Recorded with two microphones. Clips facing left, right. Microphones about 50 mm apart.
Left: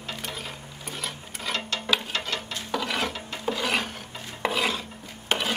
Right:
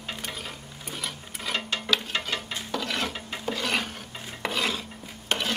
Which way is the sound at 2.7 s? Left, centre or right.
Centre.